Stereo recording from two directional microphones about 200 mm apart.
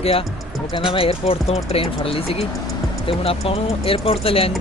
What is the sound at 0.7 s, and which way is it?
Speech, 25° left (ahead or behind).